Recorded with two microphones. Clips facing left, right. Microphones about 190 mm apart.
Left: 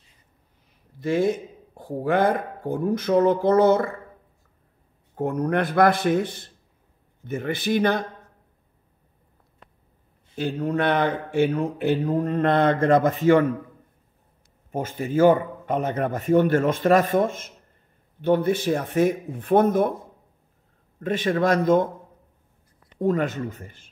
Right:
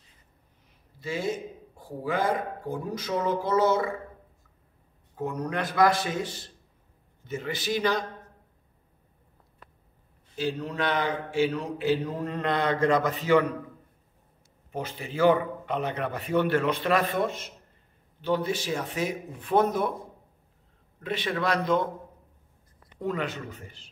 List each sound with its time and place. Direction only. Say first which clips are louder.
1.0 s speech: left 8 dB; 55° left (ahead or behind)
5.1 s speech: left 7 dB; 55° left (ahead or behind)
10.3 s speech: left 5 dB; 55° left (ahead or behind)
14.7 s speech: left 7 dB; 45° left (ahead or behind)
21.0 s speech: left 7 dB; 45° left (ahead or behind)
22.9 s speech: left 8 dB; 45° left (ahead or behind)